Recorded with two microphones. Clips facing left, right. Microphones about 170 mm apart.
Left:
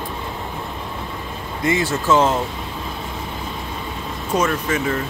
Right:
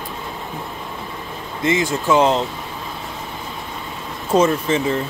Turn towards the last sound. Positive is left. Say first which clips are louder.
# right 3 dB
turn(degrees=-25)  # may be behind; listen again after turning